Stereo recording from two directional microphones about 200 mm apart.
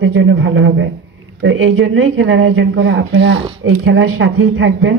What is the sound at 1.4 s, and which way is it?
Speech, 80° right.